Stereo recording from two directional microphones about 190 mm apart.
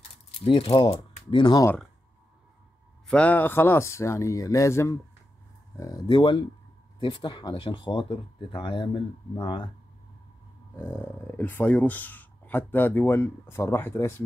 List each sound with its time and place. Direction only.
0.4 s speech: 30° left (ahead or behind)
3.1 s speech: 5° left (ahead or behind); by 9.7 s 25° left (ahead or behind)
10.8 s speech: 10° left (ahead or behind)